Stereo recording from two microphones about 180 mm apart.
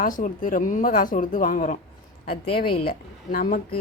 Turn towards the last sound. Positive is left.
turn(degrees=55)  # may be behind; listen again after turning